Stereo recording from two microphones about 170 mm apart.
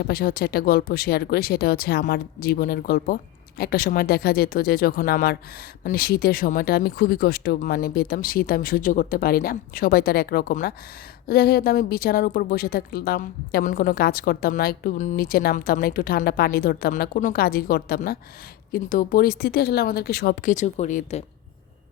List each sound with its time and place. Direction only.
0.0 s speech: 65° left (ahead or behind); by 21.2 s 45° left (ahead or behind)